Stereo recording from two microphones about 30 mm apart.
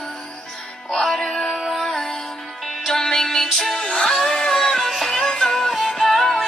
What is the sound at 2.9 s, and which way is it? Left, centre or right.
Music, centre.